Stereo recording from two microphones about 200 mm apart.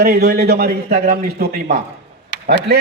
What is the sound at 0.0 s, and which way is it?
A man's voice, 50° right (ahead or behind).